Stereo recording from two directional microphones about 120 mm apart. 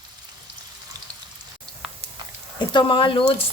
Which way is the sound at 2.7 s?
45° left (ahead or behind).